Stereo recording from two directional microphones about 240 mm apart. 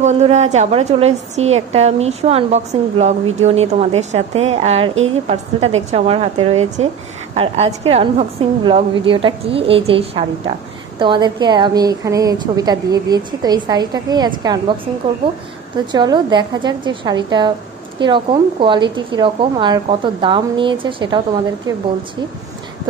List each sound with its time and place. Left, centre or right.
0.0 s a woman's voice: right
15.9 s a woman's voice: centre